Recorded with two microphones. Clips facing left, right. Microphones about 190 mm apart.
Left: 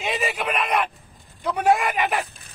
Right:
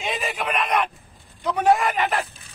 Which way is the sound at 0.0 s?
5° left (ahead or behind).